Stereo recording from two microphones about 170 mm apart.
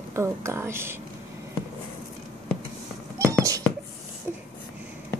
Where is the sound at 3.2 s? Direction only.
20° right (ahead or behind).